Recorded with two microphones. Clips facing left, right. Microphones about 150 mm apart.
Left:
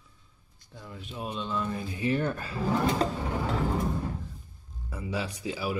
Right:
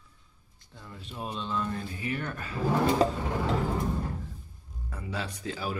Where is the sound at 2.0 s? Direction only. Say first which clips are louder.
Left 6 dB; 30° left (ahead or behind).